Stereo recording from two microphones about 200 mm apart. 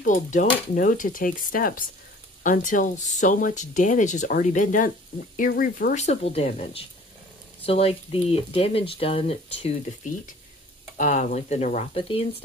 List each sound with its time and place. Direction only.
0.0 s stir: 40° left (ahead or behind)
2.4 s speech: 40° left (ahead or behind)